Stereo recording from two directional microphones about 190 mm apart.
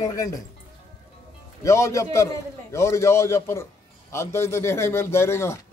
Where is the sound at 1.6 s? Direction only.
15° left (ahead or behind).